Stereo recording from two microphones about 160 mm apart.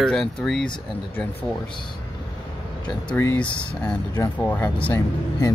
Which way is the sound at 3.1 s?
10° left (ahead or behind).